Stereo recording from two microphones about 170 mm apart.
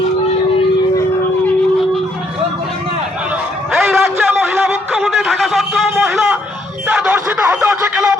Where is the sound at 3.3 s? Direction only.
5° right (ahead or behind).